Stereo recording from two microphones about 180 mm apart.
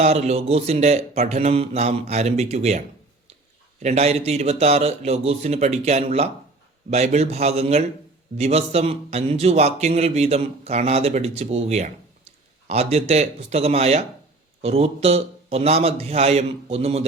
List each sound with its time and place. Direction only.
0.0 s a man's voice: 35° right (ahead or behind)
3.8 s a man's voice: 35° right (ahead or behind)